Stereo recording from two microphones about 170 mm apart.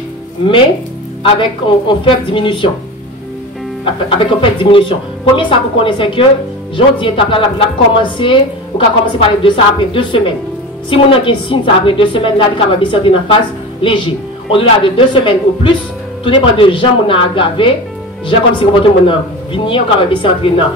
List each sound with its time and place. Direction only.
1.2 s speech: 30° left (ahead or behind)
4.4 s a woman's voice: 30° left (ahead or behind)